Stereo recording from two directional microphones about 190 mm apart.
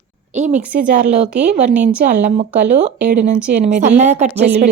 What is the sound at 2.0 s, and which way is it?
Speech, 40° right (ahead or behind).